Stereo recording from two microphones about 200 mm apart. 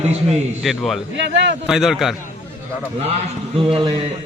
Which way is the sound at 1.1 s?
65° right (ahead or behind).